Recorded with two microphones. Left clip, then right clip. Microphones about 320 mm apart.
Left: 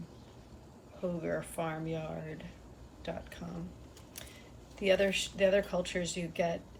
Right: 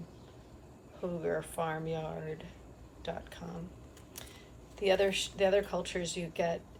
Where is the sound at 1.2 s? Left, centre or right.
Centre.